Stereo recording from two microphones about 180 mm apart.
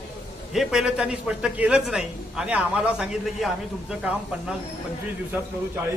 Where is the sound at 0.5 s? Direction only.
Centre (ahead or behind).